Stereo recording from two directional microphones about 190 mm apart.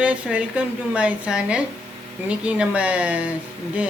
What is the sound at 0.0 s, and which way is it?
A woman's voice, 5° right (ahead or behind).